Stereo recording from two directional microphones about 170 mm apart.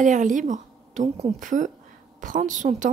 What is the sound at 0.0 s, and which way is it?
A woman's voice, 50° right (ahead or behind).